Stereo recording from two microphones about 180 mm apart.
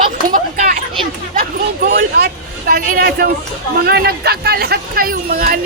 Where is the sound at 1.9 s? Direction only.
60° right (ahead or behind).